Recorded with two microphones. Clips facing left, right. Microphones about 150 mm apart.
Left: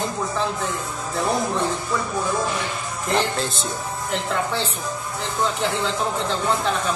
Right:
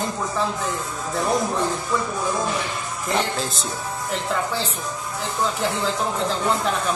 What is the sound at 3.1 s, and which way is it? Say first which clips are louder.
Speech: left 2 dB; centre (ahead or behind).